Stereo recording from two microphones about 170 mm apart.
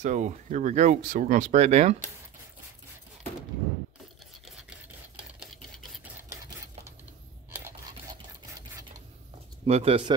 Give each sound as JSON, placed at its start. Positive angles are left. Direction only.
{"t": 0.0, "sound": "speech", "side_deg": -45}
{"t": 5.4, "sound": "a sound", "side_deg": 0}
{"t": 9.7, "sound": "speech", "side_deg": -35}